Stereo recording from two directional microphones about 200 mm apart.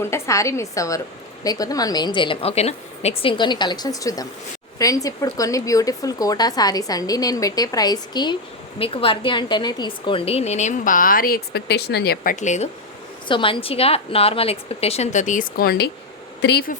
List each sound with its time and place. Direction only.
0.0 s a woman's voice: 15° left (ahead or behind); by 12.6 s 35° left (ahead or behind)
13.2 s a woman's voice: 25° left (ahead or behind); by 16.7 s 55° left (ahead or behind)